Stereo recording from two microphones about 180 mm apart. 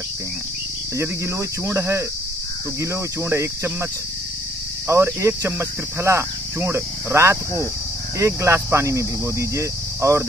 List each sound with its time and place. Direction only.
0.9 s cricket: 15° right (ahead or behind)
4.8 s cricket: 15° right (ahead or behind)